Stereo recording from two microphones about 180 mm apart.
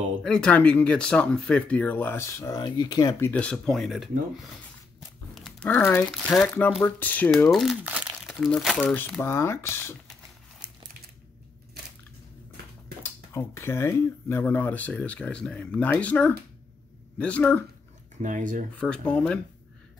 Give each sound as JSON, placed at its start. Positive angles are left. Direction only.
{"t": 0.2, "sound": "speech", "side_deg": 5}
{"t": 5.3, "sound": "a sound", "side_deg": 5}
{"t": 6.1, "sound": "speech", "side_deg": 0}
{"t": 13.0, "sound": "speech", "side_deg": 15}
{"t": 18.1, "sound": "speech", "side_deg": -45}
{"t": 18.8, "sound": "speech", "side_deg": 5}